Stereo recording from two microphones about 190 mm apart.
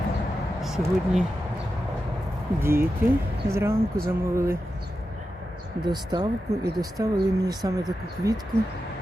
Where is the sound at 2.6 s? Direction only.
15° right (ahead or behind).